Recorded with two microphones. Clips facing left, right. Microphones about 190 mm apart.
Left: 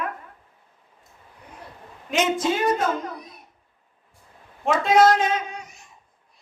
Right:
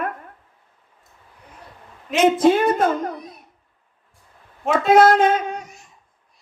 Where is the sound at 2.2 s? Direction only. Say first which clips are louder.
Right 7 dB; 55° right (ahead or behind).